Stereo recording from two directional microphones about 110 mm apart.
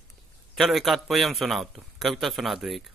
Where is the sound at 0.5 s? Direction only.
Centre (ahead or behind).